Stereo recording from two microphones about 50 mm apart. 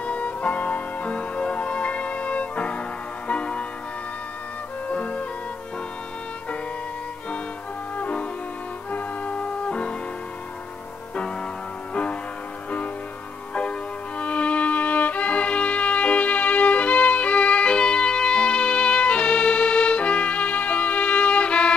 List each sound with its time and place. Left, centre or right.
0.0 s music: left
4.9 s music: left
8.0 s music: left
11.9 s music: left
13.6 s violin: left